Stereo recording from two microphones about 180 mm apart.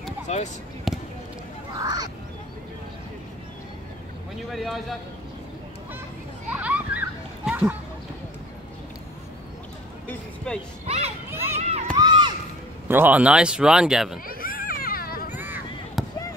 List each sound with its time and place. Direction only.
0.3 s speech: 40° left (ahead or behind)
0.9 s basketball bounce: centre (ahead or behind)
1.8 s speech: 20° right (ahead or behind)
4.5 s speech: centre (ahead or behind)
6.5 s splash: 10° right (ahead or behind)
10.0 s a sound: 5° left (ahead or behind)
10.9 s a sound: 35° right (ahead or behind)
11.4 s run: 35° right (ahead or behind)
12.0 s a sound: 25° right (ahead or behind)
12.8 s speech: 10° right (ahead or behind)
14.2 s children playing: 50° left (ahead or behind)
15.3 s a sound: 10° right (ahead or behind)
16.0 s basketball bounce: centre (ahead or behind)